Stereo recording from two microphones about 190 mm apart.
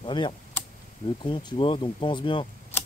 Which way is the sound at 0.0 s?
25° left (ahead or behind).